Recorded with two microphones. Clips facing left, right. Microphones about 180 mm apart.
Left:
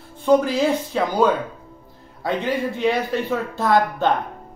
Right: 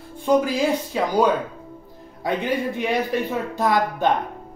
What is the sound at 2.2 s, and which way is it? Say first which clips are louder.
Speech: left 1 dB; 15° right (ahead or behind).